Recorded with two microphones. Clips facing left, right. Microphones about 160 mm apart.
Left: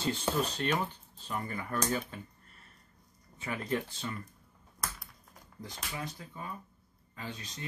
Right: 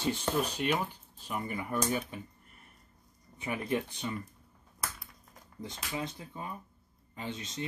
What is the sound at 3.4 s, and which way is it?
Speech, 20° right (ahead or behind).